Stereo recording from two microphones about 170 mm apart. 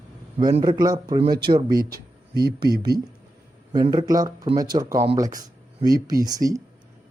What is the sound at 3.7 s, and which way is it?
Speech, 25° right (ahead or behind).